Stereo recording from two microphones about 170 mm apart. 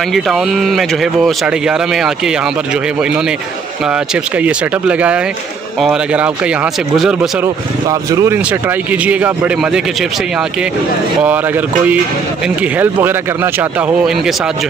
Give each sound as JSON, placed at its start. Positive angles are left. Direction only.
{"t": 0.1, "sound": "a man's voice", "side_deg": 0}
{"t": 7.9, "sound": "speech", "side_deg": -20}
{"t": 8.4, "sound": "a man's voice", "side_deg": -10}